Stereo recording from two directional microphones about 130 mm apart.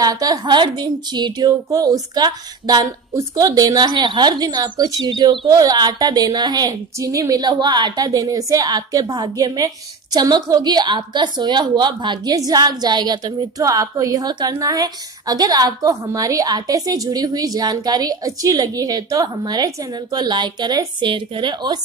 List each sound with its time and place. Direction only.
0.0 s a woman's voice: 25° right (ahead or behind)